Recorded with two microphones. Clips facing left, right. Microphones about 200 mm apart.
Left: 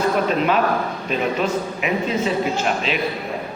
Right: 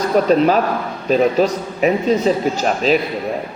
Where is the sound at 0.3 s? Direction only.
40° right (ahead or behind).